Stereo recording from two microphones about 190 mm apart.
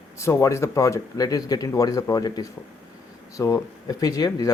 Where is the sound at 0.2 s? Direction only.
15° left (ahead or behind).